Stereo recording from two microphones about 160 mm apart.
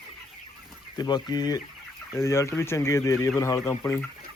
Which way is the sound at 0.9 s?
25° left (ahead or behind).